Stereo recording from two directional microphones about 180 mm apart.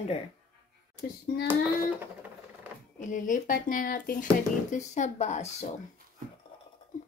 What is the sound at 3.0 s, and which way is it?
Speech, 45° left (ahead or behind).